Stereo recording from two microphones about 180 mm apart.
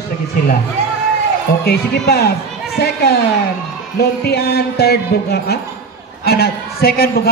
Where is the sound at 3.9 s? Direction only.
60° left (ahead or behind).